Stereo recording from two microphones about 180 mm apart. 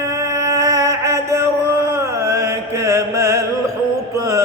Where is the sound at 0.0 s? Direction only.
15° right (ahead or behind).